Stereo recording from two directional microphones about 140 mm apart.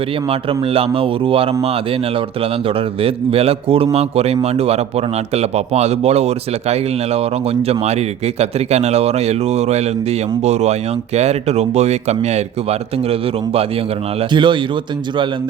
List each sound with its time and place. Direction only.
0.3 s a man's voice: 40° right (ahead or behind)